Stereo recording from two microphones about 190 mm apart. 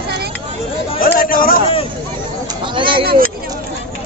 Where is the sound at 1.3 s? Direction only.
50° left (ahead or behind).